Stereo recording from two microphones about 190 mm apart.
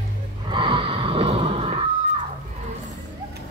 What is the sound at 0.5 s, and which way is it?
Music, 25° right (ahead or behind).